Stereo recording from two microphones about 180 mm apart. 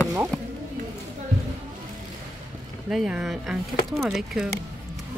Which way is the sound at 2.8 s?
5° right (ahead or behind).